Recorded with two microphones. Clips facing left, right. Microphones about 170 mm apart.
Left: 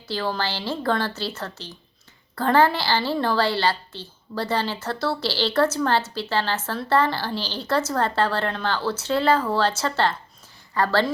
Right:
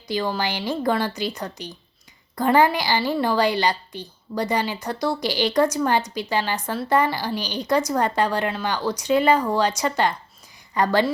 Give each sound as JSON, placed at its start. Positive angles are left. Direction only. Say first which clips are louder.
{"t": 0.1, "sound": "a woman's voice", "louder": "right 2 dB", "side_deg": -15}